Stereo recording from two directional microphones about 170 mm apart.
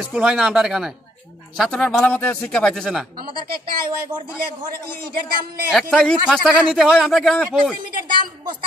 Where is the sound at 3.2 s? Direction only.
60° right (ahead or behind).